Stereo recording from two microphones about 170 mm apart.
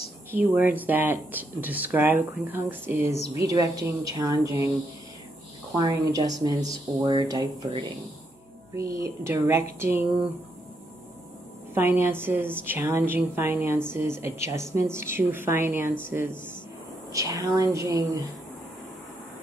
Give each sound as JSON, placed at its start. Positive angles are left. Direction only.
{"t": 0.3, "sound": "a woman's voice", "side_deg": -10}
{"t": 5.8, "sound": "a woman's voice", "side_deg": -20}
{"t": 11.7, "sound": "a woman's voice", "side_deg": -15}